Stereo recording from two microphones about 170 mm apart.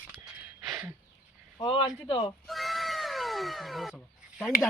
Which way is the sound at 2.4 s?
Centre (ahead or behind).